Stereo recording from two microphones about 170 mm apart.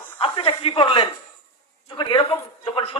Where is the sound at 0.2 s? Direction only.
30° left (ahead or behind).